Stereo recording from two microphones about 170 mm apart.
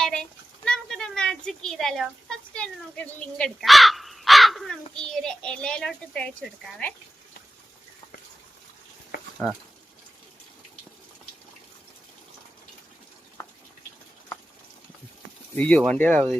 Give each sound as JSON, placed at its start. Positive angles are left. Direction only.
{"t": 0.0, "sound": "speech", "side_deg": 5}
{"t": 9.4, "sound": "speech", "side_deg": 10}
{"t": 15.5, "sound": "speech", "side_deg": 5}